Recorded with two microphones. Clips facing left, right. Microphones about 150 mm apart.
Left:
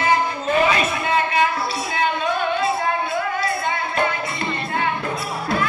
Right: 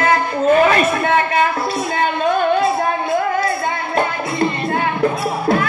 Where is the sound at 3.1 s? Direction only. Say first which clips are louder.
Right 5 dB; 50° right (ahead or behind).